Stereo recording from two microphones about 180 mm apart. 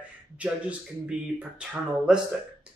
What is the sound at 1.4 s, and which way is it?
Speech, 5° right (ahead or behind).